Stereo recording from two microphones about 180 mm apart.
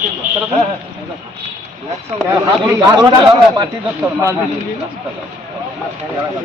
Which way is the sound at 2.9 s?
25° right (ahead or behind).